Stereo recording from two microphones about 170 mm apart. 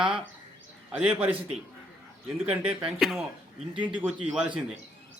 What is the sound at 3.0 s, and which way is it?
A man's voice, centre (ahead or behind).